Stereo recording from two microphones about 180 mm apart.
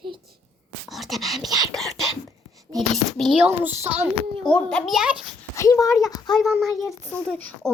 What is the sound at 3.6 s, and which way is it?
Speech, 10° right (ahead or behind).